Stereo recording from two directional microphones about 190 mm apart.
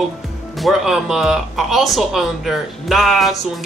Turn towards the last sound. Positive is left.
turn(degrees=0)  # may be behind; listen again after turning